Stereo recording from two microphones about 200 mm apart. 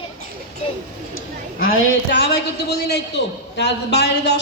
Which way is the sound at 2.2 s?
55° left (ahead or behind).